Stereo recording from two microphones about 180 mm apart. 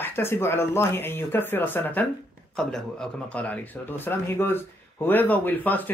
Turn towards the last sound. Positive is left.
turn(degrees=10)  # may be behind; listen again after turning